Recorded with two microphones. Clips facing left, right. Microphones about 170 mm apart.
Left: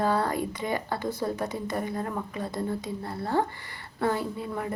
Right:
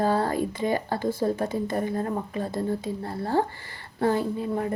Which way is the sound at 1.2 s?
30° right (ahead or behind).